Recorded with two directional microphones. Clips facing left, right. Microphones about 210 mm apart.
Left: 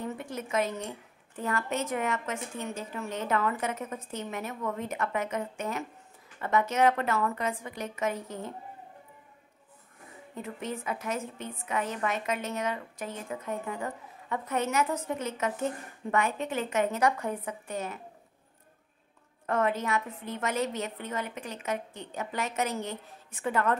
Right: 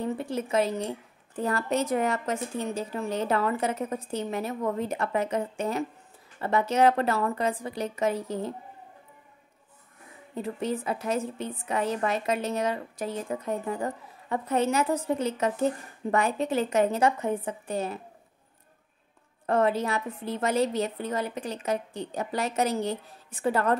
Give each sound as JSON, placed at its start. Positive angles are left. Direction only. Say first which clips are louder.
{"t": 0.0, "sound": "a woman's voice", "louder": "right 6 dB", "side_deg": -30}
{"t": 10.3, "sound": "a woman's voice", "louder": "right 6 dB", "side_deg": -35}
{"t": 19.4, "sound": "a woman's voice", "louder": "right 4 dB", "side_deg": -35}